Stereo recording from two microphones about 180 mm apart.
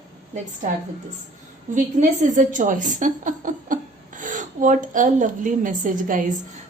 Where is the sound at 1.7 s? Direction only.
45° right (ahead or behind).